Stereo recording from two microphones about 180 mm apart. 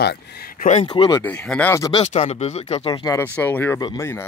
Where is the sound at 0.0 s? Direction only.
65° left (ahead or behind).